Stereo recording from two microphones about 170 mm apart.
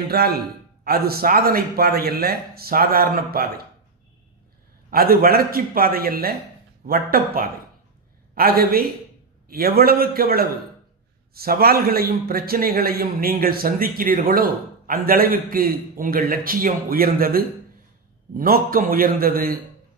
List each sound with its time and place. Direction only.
0.1 s a man's voice: 65° right (ahead or behind)
4.9 s a man's voice: 60° right (ahead or behind)